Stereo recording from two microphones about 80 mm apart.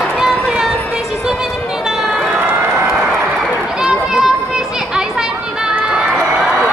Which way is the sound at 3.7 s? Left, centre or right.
Centre.